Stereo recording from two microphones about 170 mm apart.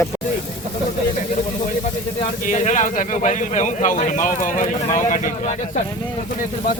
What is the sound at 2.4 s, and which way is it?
Speech, 45° left (ahead or behind).